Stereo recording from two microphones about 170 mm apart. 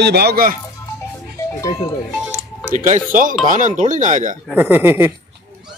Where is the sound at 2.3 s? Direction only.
10° right (ahead or behind).